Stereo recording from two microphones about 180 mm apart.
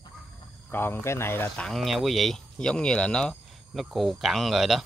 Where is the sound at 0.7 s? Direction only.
10° left (ahead or behind).